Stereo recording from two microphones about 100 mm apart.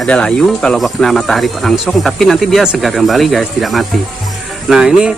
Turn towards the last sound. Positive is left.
turn(degrees=-5)  # may be behind; listen again after turning